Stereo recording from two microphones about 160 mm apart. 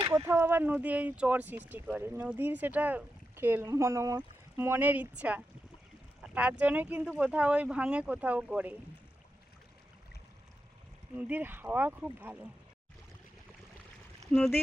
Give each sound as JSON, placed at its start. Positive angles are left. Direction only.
{"t": 0.3, "sound": "speech", "side_deg": -15}
{"t": 11.2, "sound": "speech", "side_deg": -10}
{"t": 14.3, "sound": "speech", "side_deg": 5}